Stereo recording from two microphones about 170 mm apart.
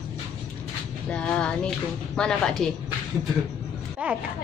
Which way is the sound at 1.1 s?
5° left (ahead or behind).